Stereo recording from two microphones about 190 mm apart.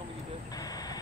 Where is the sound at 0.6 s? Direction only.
20° left (ahead or behind).